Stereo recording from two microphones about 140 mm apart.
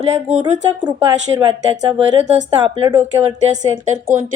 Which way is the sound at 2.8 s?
25° right (ahead or behind).